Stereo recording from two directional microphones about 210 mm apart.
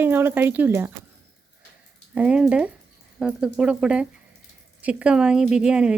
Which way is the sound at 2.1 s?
5° right (ahead or behind).